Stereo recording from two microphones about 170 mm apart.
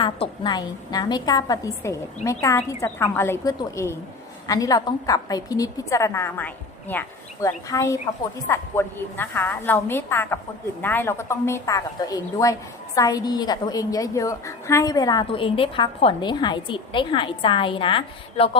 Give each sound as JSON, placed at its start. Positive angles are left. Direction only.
{"t": 0.0, "sound": "a woman's voice", "side_deg": 25}